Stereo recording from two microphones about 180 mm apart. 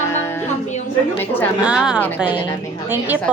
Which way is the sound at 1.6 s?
5° right (ahead or behind).